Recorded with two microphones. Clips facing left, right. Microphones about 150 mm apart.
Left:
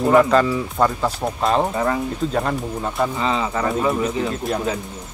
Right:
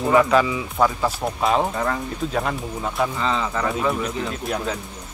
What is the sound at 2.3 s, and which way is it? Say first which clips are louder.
Speech: left 3 dB; centre (ahead or behind).